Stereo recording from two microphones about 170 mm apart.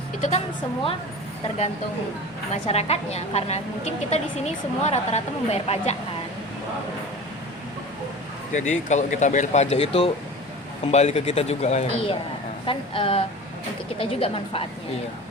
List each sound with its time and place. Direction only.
0.2 s a woman's voice: 40° left (ahead or behind)
2.5 s a woman's voice: 35° left (ahead or behind)
8.5 s a woman's voice: 45° left (ahead or behind)